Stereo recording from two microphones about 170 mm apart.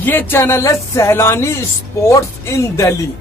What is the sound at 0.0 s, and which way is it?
Speech, 10° left (ahead or behind).